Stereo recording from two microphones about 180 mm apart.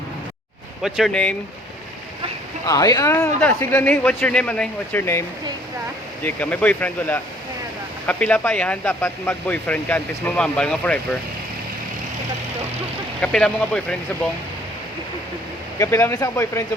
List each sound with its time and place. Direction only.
0.8 s speech: centre (ahead or behind)
2.6 s speech: 20° left (ahead or behind)
6.2 s speech: 10° left (ahead or behind)
13.2 s speech: 5° left (ahead or behind)
15.8 s speech: 15° left (ahead or behind)